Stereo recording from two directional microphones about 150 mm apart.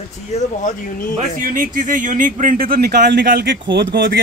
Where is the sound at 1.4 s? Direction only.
65° right (ahead or behind).